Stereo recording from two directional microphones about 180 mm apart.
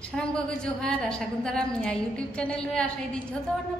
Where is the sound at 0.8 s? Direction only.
5° left (ahead or behind).